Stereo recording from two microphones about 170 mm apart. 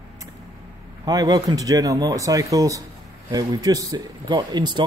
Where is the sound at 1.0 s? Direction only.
20° right (ahead or behind).